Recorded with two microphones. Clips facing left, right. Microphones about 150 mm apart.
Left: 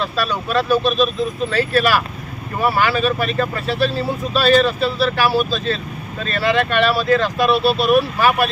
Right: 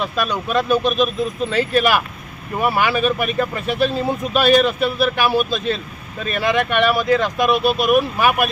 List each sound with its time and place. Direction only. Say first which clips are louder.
0.0 s speech: even; 15° right (ahead or behind)